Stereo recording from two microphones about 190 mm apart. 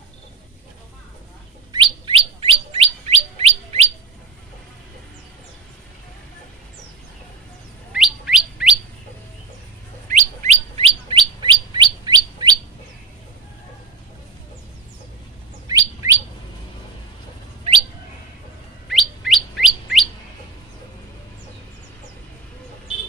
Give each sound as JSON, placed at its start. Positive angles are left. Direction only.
{"t": 1.7, "sound": "bird", "side_deg": -25}
{"t": 7.9, "sound": "bird", "side_deg": -5}
{"t": 10.0, "sound": "bird", "side_deg": -40}
{"t": 15.6, "sound": "bird", "side_deg": -15}
{"t": 18.9, "sound": "chirp", "side_deg": 0}